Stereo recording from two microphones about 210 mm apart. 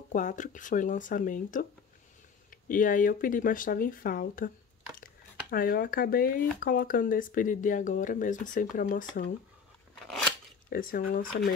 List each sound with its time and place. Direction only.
0.1 s speech: 35° left (ahead or behind)
10.7 s speech: 40° left (ahead or behind)